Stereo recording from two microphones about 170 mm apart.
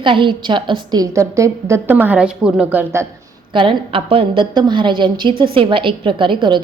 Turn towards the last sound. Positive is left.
turn(degrees=-30)  # may be behind; listen again after turning